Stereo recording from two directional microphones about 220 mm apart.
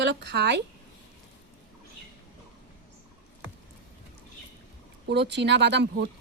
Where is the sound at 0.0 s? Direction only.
55° right (ahead or behind).